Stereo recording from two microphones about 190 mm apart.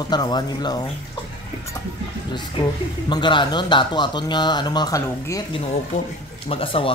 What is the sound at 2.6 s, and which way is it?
Speech, 25° left (ahead or behind).